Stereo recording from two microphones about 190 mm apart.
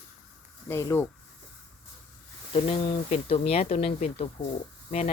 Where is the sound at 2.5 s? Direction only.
30° left (ahead or behind).